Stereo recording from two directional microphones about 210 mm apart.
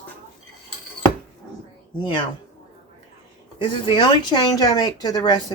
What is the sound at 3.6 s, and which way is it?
Speech, 25° left (ahead or behind).